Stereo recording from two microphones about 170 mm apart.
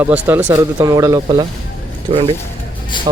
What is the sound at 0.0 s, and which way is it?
Speech, 10° right (ahead or behind).